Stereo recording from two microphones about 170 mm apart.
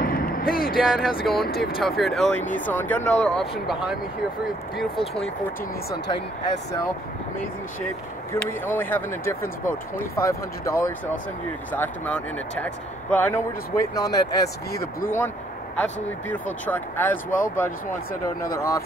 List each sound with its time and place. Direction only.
0.0 s a sound: 60° left (ahead or behind)
0.7 s speech: 5° right (ahead or behind)
2.4 s speech: 50° left (ahead or behind)
2.7 s speech: 10° left (ahead or behind)
8.3 s speech: 10° left (ahead or behind)
14.7 s speech: 65° left (ahead or behind)
15.0 s speech: 10° left (ahead or behind)